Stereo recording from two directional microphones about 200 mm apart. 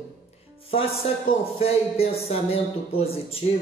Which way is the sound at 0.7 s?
30° left (ahead or behind).